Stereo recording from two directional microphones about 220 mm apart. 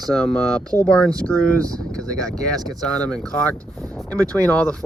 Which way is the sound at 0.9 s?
5° left (ahead or behind).